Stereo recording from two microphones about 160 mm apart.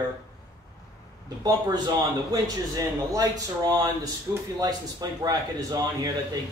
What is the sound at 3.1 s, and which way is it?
Speech, 25° right (ahead or behind).